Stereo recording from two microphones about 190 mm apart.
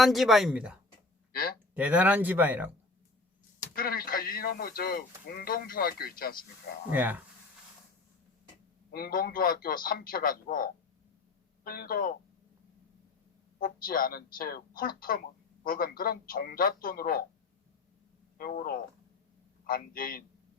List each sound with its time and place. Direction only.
0.0 s speech: centre (ahead or behind)
1.3 s speech: 55° left (ahead or behind)
1.7 s speech: 10° right (ahead or behind)
3.8 s speech: 50° left (ahead or behind)
6.9 s speech: 10° right (ahead or behind)
8.9 s speech: 50° left (ahead or behind)
13.6 s speech: 50° left (ahead or behind)
18.3 s speech: 50° left (ahead or behind)